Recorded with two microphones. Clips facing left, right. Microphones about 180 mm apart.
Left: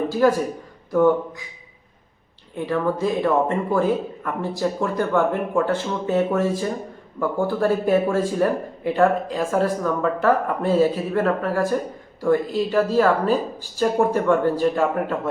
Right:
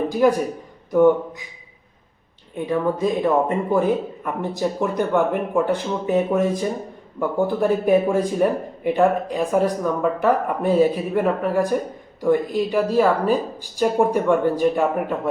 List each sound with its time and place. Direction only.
0.1 s a man's voice: 15° right (ahead or behind)
2.6 s speech: 20° right (ahead or behind)